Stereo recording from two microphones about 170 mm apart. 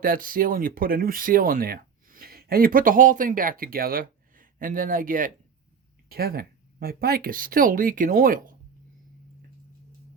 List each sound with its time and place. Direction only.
0.0 s speech: 55° right (ahead or behind)
6.1 s speech: 60° right (ahead or behind)